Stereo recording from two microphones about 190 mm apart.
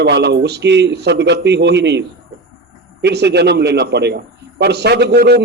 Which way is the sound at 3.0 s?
60° right (ahead or behind).